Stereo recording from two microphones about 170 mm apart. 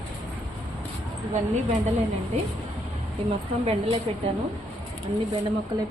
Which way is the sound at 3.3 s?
35° right (ahead or behind).